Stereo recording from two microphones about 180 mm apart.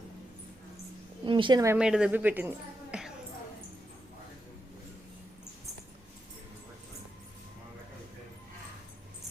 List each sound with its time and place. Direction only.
1.2 s speech: 25° right (ahead or behind)
1.7 s speech: 5° right (ahead or behind)
2.9 s cat: 5° right (ahead or behind)